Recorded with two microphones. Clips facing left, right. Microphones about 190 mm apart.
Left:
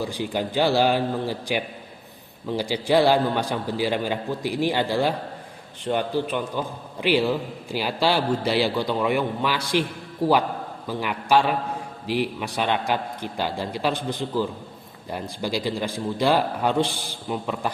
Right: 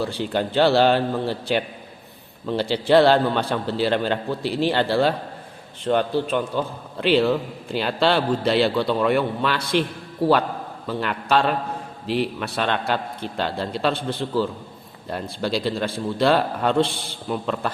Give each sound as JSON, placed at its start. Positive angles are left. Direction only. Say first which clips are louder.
{"t": 0.0, "sound": "a man's voice", "louder": "right 3 dB", "side_deg": 15}
{"t": 10.8, "sound": "a man's voice", "louder": "even", "side_deg": 10}